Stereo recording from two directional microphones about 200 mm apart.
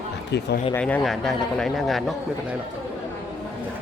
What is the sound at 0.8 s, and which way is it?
A man's voice, 5° left (ahead or behind).